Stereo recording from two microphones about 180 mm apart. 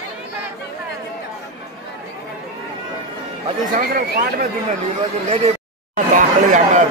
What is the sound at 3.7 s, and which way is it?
Speech, 55° right (ahead or behind).